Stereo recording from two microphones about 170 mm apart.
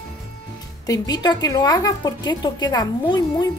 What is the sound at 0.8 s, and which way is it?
A woman's voice, 20° left (ahead or behind).